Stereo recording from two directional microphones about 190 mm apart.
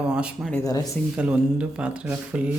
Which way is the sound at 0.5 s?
20° left (ahead or behind).